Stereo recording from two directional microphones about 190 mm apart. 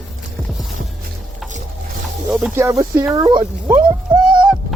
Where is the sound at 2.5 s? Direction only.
15° right (ahead or behind).